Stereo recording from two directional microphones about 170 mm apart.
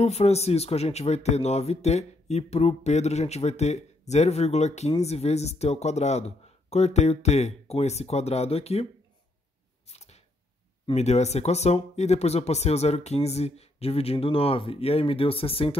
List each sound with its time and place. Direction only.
0.0 s speech: 40° left (ahead or behind)
9.8 s camera: 40° left (ahead or behind)
10.9 s speech: 40° left (ahead or behind)